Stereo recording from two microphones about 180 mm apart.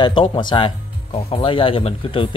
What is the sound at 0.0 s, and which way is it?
Speech, 25° left (ahead or behind).